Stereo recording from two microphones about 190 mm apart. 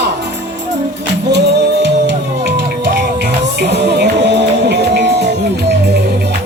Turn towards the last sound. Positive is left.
turn(degrees=-60)  # may be behind; listen again after turning